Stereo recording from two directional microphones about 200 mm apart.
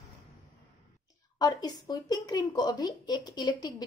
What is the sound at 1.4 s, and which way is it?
Speech, 20° left (ahead or behind).